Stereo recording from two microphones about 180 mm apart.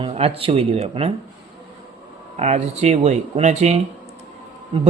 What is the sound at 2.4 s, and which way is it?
Speech, 40° right (ahead or behind).